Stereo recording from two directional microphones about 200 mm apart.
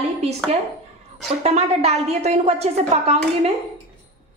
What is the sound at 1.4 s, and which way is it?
A woman's voice, 35° right (ahead or behind).